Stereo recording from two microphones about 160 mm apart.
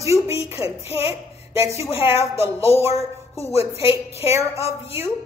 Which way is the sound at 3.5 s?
40° left (ahead or behind).